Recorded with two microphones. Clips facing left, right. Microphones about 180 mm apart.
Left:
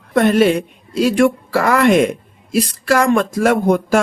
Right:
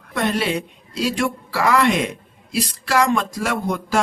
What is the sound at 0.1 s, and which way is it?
A woman's voice, 50° left (ahead or behind).